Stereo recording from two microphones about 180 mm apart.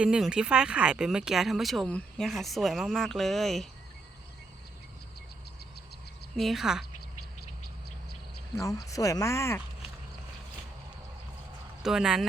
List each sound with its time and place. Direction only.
0.0 s speech: 5° right (ahead or behind)
6.3 s speech: centre (ahead or behind)
8.5 s speech: 20° left (ahead or behind)
11.8 s speech: 5° right (ahead or behind)